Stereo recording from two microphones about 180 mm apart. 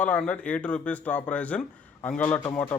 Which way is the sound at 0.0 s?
10° left (ahead or behind).